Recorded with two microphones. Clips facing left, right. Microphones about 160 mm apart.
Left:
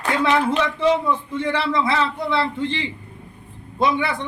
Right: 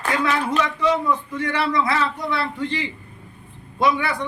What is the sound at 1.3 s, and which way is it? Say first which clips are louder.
A man's voice: left 1 dB; 25° left (ahead or behind).